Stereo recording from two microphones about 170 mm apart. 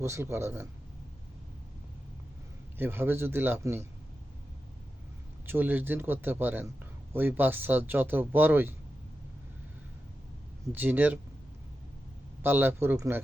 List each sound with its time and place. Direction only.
0.0 s speech: 15° right (ahead or behind)
2.7 s speech: 15° right (ahead or behind)
5.5 s speech: 10° right (ahead or behind)
10.7 s speech: 10° right (ahead or behind)
12.4 s speech: 15° right (ahead or behind)